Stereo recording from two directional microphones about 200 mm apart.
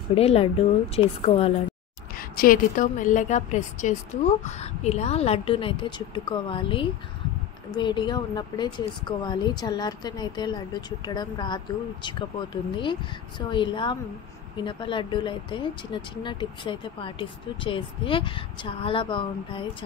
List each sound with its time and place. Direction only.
0.1 s speech: 30° left (ahead or behind)
2.1 s a woman's voice: 45° left (ahead or behind); by 12.3 s 25° left (ahead or behind)
13.5 s speech: 25° left (ahead or behind)